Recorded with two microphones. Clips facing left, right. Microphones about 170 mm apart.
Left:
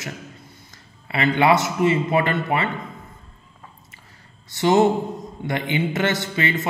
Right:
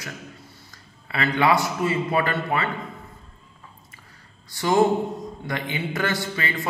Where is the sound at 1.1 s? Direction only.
25° left (ahead or behind).